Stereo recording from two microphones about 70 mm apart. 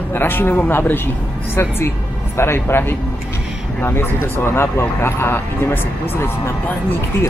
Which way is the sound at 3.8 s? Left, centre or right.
Left.